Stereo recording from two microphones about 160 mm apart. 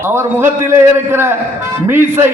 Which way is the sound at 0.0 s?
15° right (ahead or behind).